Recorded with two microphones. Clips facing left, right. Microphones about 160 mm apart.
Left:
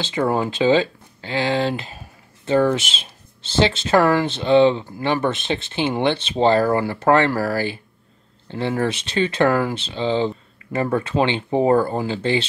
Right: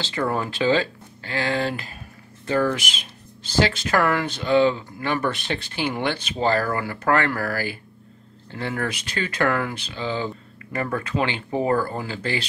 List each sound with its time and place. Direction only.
0.0 s speech: 20° left (ahead or behind)